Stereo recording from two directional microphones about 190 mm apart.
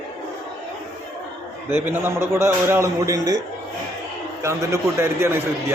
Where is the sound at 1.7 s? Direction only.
10° right (ahead or behind).